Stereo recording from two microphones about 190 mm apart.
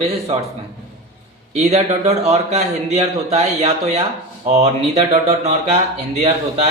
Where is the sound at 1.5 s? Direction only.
35° right (ahead or behind).